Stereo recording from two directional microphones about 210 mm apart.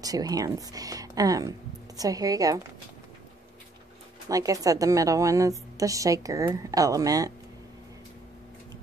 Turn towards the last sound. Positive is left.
turn(degrees=-15)  # may be behind; listen again after turning